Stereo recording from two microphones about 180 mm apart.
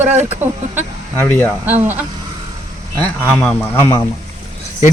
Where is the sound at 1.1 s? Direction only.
15° left (ahead or behind).